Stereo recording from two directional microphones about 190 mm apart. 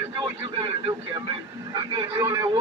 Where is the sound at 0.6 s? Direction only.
25° right (ahead or behind).